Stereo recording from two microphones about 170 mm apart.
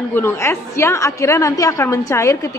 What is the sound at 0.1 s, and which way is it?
A woman's voice, 15° left (ahead or behind).